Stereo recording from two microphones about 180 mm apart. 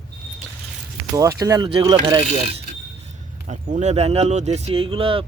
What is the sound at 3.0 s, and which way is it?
Speech, 40° right (ahead or behind).